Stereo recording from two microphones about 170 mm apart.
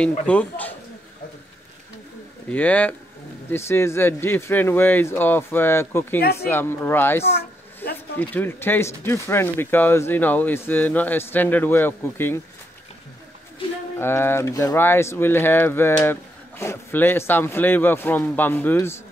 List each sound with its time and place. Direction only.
0.3 s speech: 10° left (ahead or behind)
2.5 s speech: 10° left (ahead or behind)
13.9 s speech: 15° left (ahead or behind)